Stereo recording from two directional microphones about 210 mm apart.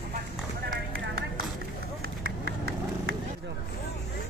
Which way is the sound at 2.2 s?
50° right (ahead or behind).